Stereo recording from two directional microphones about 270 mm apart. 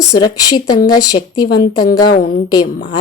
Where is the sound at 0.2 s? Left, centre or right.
Centre.